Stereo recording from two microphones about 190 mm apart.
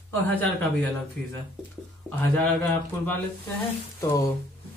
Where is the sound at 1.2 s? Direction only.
5° left (ahead or behind).